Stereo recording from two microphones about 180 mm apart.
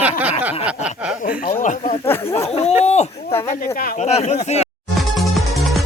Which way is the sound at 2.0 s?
15° left (ahead or behind).